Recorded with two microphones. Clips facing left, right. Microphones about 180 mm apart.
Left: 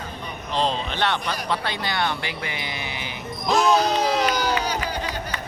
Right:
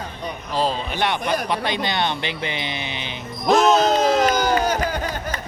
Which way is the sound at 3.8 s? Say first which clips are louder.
Right 4 dB; 50° right (ahead or behind).